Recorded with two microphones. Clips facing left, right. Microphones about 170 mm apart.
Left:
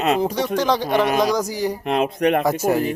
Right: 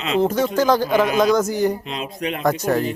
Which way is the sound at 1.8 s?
60° left (ahead or behind).